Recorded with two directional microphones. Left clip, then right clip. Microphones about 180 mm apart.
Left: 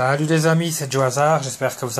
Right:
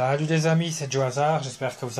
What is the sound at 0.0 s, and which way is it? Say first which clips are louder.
Speech: left 5 dB; 15° left (ahead or behind).